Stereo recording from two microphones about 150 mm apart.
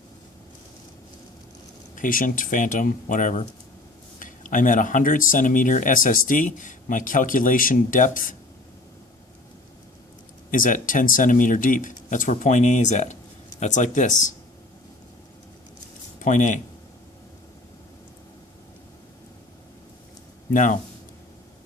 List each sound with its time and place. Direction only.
2.0 s speech: 65° left (ahead or behind)
10.5 s speech: 65° left (ahead or behind)
16.2 s speech: 55° left (ahead or behind)
20.5 s speech: 60° left (ahead or behind)